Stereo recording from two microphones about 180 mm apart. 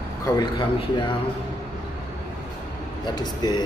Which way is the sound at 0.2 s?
20° left (ahead or behind).